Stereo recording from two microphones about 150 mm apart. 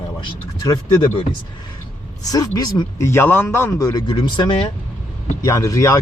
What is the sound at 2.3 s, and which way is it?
Speech, 25° left (ahead or behind).